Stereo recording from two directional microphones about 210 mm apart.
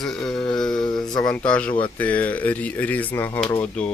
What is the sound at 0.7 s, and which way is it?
Speech, 20° left (ahead or behind).